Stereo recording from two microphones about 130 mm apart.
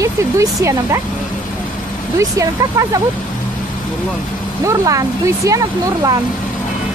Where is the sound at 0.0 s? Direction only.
25° right (ahead or behind).